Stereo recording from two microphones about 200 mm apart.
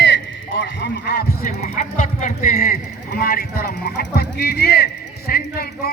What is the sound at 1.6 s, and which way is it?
A man's voice, 40° left (ahead or behind).